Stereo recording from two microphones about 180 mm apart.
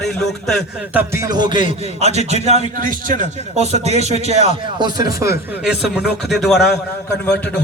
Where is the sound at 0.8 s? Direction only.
10° right (ahead or behind); by 4.5 s 35° right (ahead or behind).